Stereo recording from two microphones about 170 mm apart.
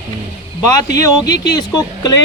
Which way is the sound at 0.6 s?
20° left (ahead or behind).